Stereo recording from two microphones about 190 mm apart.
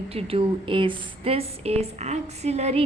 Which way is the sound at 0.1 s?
30° right (ahead or behind).